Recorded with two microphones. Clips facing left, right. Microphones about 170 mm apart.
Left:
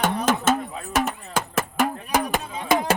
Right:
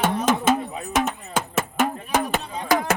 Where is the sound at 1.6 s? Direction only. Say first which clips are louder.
Even; 10° left (ahead or behind).